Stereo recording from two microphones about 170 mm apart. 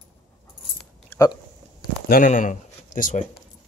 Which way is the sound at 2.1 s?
55° left (ahead or behind).